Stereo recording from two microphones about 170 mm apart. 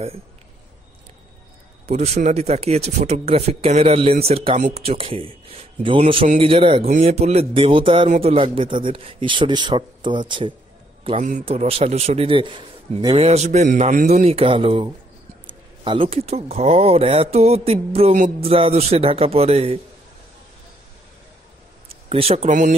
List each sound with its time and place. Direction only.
1.9 s a man's voice: 40° right (ahead or behind)
11.1 s a man's voice: 45° right (ahead or behind)
22.1 s a man's voice: 35° right (ahead or behind)